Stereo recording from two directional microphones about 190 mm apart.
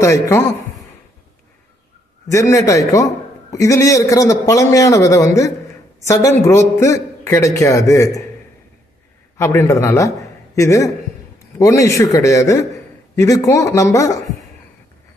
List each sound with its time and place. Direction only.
0.0 s a man's voice: 15° left (ahead or behind)
2.3 s a man's voice: 15° left (ahead or behind)
9.4 s a man's voice: 15° left (ahead or behind)